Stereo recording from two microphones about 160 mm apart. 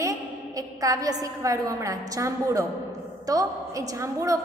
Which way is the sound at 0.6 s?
20° right (ahead or behind).